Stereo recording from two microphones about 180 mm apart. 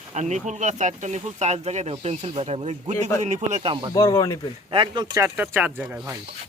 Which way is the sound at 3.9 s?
20° left (ahead or behind).